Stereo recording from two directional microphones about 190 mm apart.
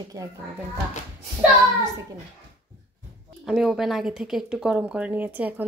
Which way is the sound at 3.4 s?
Centre (ahead or behind).